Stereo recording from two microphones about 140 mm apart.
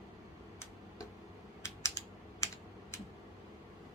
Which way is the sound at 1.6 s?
20° left (ahead or behind).